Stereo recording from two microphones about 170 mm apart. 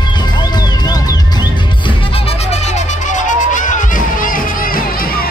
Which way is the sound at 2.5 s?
40° left (ahead or behind).